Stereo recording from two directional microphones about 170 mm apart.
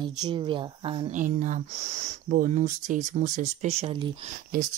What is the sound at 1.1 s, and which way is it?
Speech, 50° right (ahead or behind).